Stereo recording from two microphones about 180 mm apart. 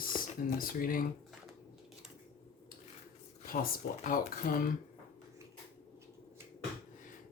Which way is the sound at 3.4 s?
55° left (ahead or behind).